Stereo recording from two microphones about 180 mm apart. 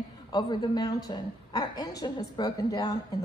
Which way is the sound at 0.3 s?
25° left (ahead or behind).